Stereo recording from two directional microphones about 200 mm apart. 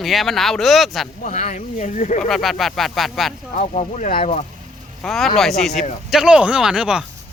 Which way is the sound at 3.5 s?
40° left (ahead or behind).